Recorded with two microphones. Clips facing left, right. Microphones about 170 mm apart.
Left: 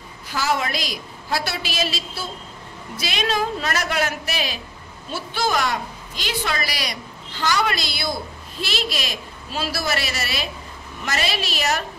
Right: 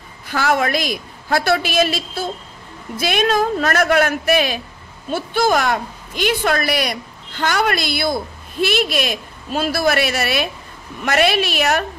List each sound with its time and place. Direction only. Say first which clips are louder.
0.3 s a woman's voice: right 5 dB; 55° right (ahead or behind)